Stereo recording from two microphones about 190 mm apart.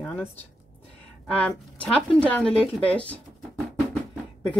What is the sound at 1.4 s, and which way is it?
Speech, 5° left (ahead or behind).